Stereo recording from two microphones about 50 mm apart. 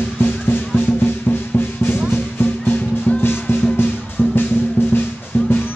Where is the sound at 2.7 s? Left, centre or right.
Left.